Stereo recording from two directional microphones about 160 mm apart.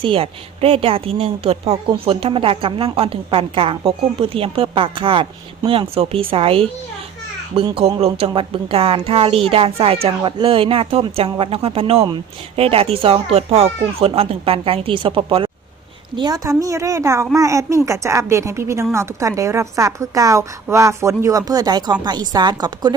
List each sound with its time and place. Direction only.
0.0 s a woman's voice: 35° right (ahead or behind)